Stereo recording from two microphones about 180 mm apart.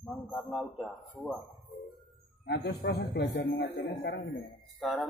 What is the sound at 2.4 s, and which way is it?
A man's voice, 75° left (ahead or behind).